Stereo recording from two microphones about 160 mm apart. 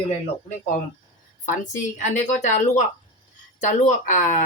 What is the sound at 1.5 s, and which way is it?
Speech, 50° left (ahead or behind).